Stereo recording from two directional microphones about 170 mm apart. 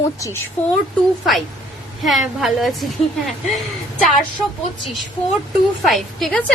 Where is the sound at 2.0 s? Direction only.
Centre (ahead or behind).